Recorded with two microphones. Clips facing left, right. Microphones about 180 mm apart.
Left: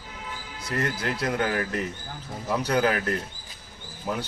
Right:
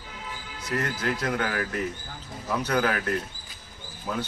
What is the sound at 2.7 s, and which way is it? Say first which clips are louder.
Speech: left 2 dB; 25° left (ahead or behind).